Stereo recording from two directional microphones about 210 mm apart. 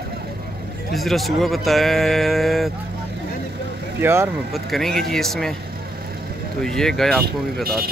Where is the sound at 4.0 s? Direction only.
10° right (ahead or behind).